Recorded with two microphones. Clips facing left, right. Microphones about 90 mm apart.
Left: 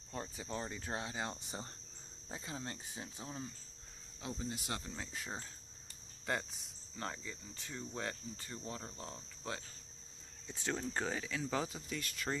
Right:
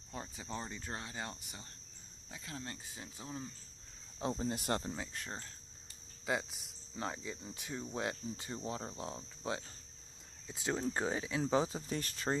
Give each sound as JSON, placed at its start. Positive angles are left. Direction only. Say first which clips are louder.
{"t": 0.1, "sound": "speech", "louder": "left 1 dB", "side_deg": 0}
{"t": 0.9, "sound": "speech", "louder": "left 4 dB", "side_deg": 15}
{"t": 1.4, "sound": "speech", "louder": "left 7 dB", "side_deg": 35}
{"t": 2.5, "sound": "speech", "louder": "right 1 dB", "side_deg": 20}
{"t": 4.2, "sound": "speech", "louder": "right 6 dB", "side_deg": -40}
{"t": 4.9, "sound": "speech", "louder": "right 1 dB", "side_deg": 0}
{"t": 6.2, "sound": "speech", "louder": "right 2 dB", "side_deg": -5}
{"t": 7.5, "sound": "cricket", "louder": "right 3 dB", "side_deg": -10}
{"t": 11.5, "sound": "speech", "louder": "right 7 dB", "side_deg": -25}